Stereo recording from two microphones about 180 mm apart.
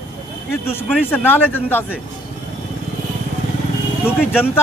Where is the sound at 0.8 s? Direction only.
10° left (ahead or behind).